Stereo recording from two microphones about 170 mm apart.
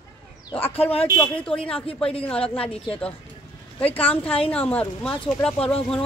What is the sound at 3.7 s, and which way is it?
A woman's voice, 10° left (ahead or behind).